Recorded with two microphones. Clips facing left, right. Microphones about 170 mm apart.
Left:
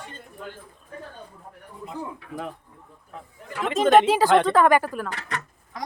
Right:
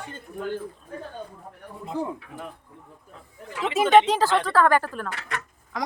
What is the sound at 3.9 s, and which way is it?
Speech, 5° left (ahead or behind).